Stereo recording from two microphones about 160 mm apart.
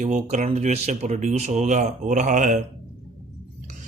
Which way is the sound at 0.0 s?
50° right (ahead or behind).